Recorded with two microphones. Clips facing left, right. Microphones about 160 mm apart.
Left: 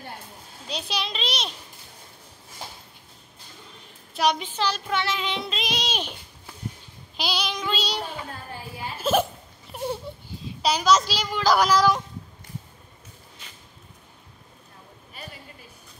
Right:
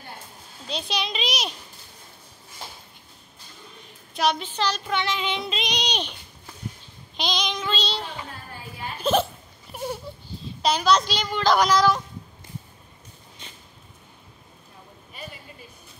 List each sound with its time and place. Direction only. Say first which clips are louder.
0.7 s child singing: right 2 dB; 5° left (ahead or behind)
4.1 s child singing: even; 10° left (ahead or behind)
8.9 s hiccup: right 1 dB; 5° left (ahead or behind)
10.1 s a sound: left 1 dB; 20° left (ahead or behind)
10.6 s a child's voice: even; 5° left (ahead or behind)